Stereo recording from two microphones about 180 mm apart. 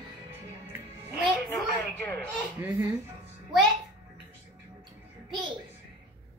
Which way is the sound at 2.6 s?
15° right (ahead or behind).